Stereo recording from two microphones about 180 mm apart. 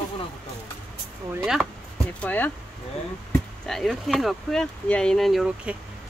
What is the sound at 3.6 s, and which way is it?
Speech, centre (ahead or behind).